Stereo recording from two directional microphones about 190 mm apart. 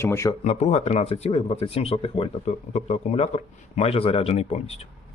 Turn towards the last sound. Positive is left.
turn(degrees=35)  # may be behind; listen again after turning